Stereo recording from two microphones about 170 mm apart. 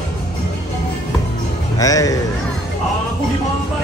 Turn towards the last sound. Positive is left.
turn(degrees=20)  # may be behind; listen again after turning